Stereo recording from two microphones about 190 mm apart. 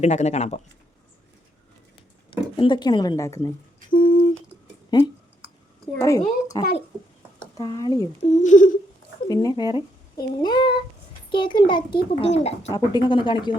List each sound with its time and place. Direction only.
0.0 s speech: 35° left (ahead or behind)
2.3 s speech: 25° left (ahead or behind)
3.9 s humming: 50° left (ahead or behind)
4.9 s speech: 20° left (ahead or behind)
8.4 s a sound: 40° left (ahead or behind)
9.3 s speech: 20° left (ahead or behind)
12.7 s speech: 20° left (ahead or behind)